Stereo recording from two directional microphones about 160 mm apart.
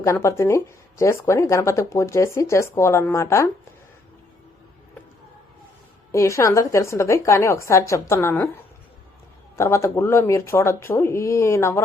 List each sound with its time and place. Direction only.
0.0 s speech: 20° left (ahead or behind)
6.1 s speech: 20° left (ahead or behind)
9.6 s speech: 15° left (ahead or behind)